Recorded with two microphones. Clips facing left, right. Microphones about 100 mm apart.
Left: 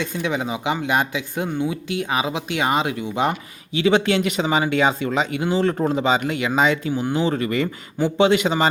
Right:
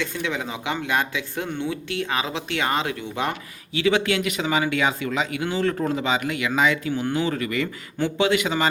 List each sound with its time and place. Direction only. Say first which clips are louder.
0.0 s speech: left 3 dB; 20° left (ahead or behind)